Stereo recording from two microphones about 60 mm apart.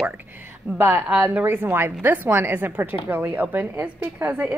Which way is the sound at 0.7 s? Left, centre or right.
Right.